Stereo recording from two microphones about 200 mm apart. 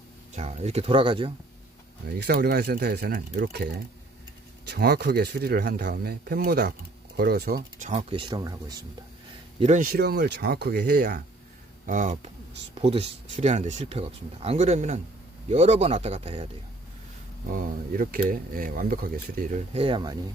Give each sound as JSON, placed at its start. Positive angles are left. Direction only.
{"t": 0.3, "sound": "speech", "side_deg": -30}
{"t": 2.0, "sound": "speech", "side_deg": -55}
{"t": 8.1, "sound": "speech", "side_deg": -25}
{"t": 9.6, "sound": "speech", "side_deg": -35}
{"t": 9.8, "sound": "speech", "side_deg": -50}
{"t": 11.9, "sound": "speech", "side_deg": -40}
{"t": 12.7, "sound": "speech", "side_deg": -30}
{"t": 17.5, "sound": "speech", "side_deg": -40}